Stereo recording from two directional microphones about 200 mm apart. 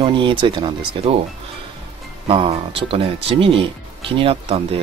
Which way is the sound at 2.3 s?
30° right (ahead or behind).